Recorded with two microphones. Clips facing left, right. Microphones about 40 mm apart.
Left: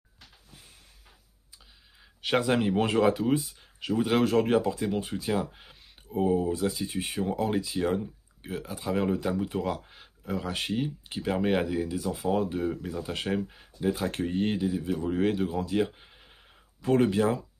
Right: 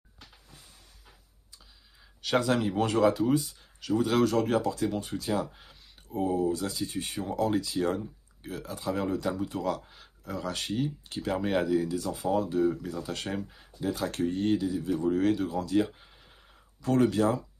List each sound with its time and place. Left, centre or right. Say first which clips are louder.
2.2 s speech: left 1 dB; left
6.9 s speech: left 3 dB; left
12.2 s speech: right 2 dB; left
16.0 s a sound: left 1 dB; left
16.8 s speech: left 1 dB; left